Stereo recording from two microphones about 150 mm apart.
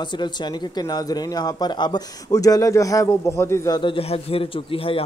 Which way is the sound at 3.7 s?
35° left (ahead or behind).